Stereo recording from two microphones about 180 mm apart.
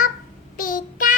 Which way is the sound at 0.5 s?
50° left (ahead or behind).